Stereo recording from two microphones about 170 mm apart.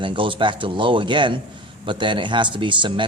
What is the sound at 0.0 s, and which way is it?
Speech, 30° right (ahead or behind).